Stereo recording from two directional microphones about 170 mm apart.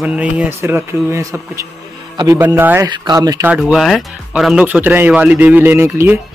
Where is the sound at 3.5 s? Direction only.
Centre (ahead or behind).